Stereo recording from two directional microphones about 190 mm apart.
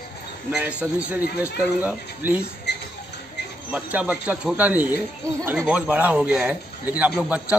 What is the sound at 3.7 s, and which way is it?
Speech, 10° right (ahead or behind).